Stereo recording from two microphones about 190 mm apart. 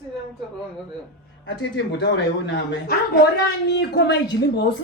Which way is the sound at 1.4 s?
70° left (ahead or behind).